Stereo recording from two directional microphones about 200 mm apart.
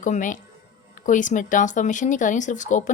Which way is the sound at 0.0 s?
40° left (ahead or behind).